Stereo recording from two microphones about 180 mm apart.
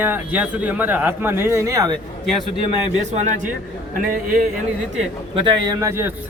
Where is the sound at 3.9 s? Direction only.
50° right (ahead or behind).